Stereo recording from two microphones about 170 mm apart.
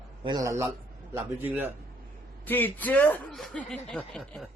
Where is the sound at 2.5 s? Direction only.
10° left (ahead or behind).